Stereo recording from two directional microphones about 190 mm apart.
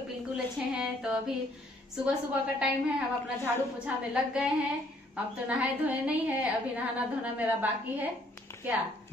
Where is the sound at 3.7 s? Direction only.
5° right (ahead or behind).